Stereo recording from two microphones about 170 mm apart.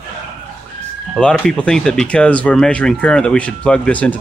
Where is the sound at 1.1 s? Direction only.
5° left (ahead or behind).